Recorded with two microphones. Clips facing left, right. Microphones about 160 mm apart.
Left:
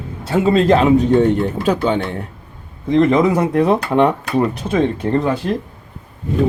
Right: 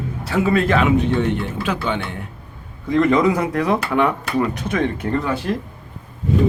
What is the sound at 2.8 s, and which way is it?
Speech, 25° left (ahead or behind).